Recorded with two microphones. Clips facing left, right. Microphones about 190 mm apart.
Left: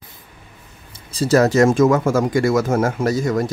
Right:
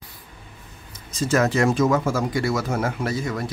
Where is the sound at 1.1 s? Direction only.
35° left (ahead or behind).